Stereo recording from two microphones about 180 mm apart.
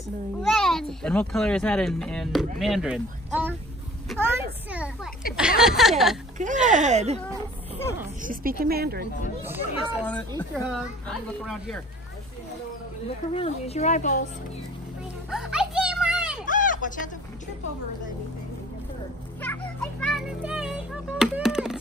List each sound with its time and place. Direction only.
0.4 s a child's voice: centre (ahead or behind)
6.3 s speech: 45° right (ahead or behind)
8.2 s a woman's voice: 50° right (ahead or behind)
9.4 s a child's voice: 10° right (ahead or behind)
10.0 s speech: 10° left (ahead or behind)
10.5 s speech: centre (ahead or behind)
13.3 s a woman's voice: 35° left (ahead or behind)
15.2 s music: 5° right (ahead or behind)
16.4 s a sound: 45° left (ahead or behind)
19.4 s music: 10° left (ahead or behind)